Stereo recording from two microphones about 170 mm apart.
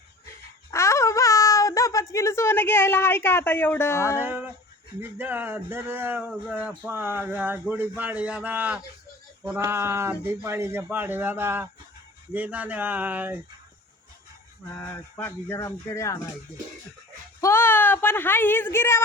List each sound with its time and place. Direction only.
0.7 s a sound: 15° left (ahead or behind)
4.2 s speech: 10° right (ahead or behind)
14.8 s speech: 10° left (ahead or behind)
17.4 s speech: 15° left (ahead or behind)